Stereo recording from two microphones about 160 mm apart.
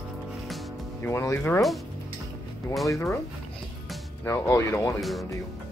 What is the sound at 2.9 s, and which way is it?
Speech, 15° left (ahead or behind).